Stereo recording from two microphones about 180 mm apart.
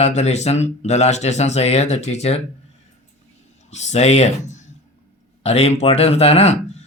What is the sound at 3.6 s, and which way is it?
Speech, 40° left (ahead or behind).